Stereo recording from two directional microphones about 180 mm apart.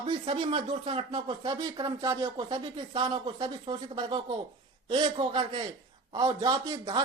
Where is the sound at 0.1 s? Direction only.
30° right (ahead or behind).